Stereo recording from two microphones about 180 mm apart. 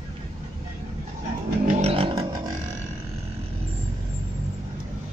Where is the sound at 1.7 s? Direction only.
35° right (ahead or behind).